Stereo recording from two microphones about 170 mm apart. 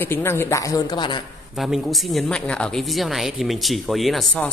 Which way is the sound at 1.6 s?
Centre (ahead or behind).